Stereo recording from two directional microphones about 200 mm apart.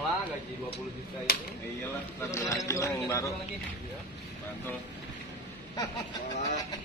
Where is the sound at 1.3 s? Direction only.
50° left (ahead or behind).